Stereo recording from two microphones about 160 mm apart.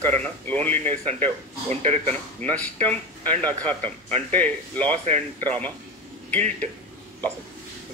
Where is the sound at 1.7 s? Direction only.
45° right (ahead or behind).